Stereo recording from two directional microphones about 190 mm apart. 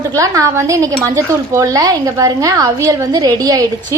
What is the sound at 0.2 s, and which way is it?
A woman's voice, 15° right (ahead or behind).